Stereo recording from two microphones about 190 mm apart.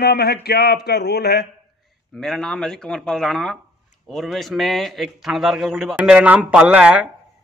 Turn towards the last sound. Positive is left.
turn(degrees=-5)  # may be behind; listen again after turning